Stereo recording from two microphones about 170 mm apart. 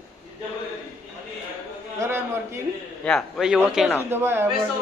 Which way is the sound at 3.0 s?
Centre (ahead or behind).